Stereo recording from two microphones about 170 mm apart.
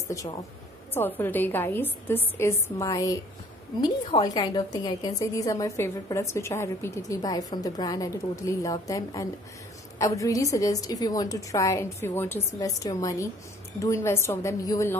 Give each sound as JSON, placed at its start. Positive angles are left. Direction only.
{"t": 0.1, "sound": "a woman's voice", "side_deg": 20}